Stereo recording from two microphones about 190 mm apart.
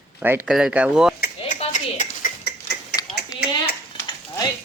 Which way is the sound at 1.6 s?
40° left (ahead or behind).